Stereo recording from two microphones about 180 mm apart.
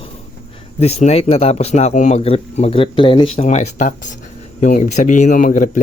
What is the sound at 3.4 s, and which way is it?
Speech, 40° left (ahead or behind).